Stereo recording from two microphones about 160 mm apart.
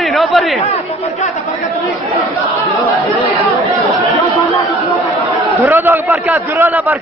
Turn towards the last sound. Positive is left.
turn(degrees=-10)  # may be behind; listen again after turning